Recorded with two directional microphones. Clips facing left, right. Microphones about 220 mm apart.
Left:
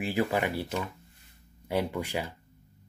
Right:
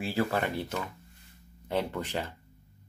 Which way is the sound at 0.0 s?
15° left (ahead or behind).